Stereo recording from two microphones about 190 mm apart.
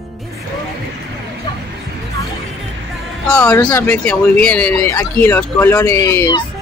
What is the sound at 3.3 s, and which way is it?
Speech, 5° left (ahead or behind).